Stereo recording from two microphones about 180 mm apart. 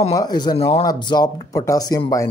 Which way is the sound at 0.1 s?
20° left (ahead or behind).